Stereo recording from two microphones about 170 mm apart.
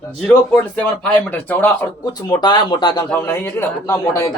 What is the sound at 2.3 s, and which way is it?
Speech, 25° left (ahead or behind).